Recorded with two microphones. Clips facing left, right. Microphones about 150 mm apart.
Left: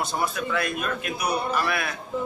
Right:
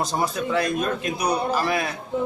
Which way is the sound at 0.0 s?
40° right (ahead or behind).